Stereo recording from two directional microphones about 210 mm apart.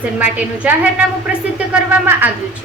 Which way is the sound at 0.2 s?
5° right (ahead or behind).